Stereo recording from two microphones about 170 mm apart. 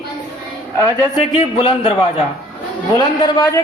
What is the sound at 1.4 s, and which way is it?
Speech, 35° left (ahead or behind).